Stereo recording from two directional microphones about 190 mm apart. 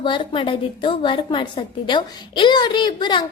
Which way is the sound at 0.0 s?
25° left (ahead or behind).